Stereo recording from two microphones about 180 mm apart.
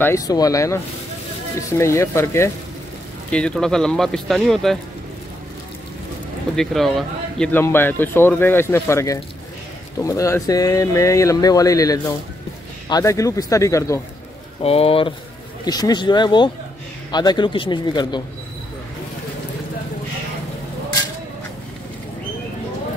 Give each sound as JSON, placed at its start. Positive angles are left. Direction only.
{"t": 0.0, "sound": "speech", "side_deg": 20}
{"t": 6.5, "sound": "speech", "side_deg": 0}
{"t": 14.6, "sound": "speech", "side_deg": 35}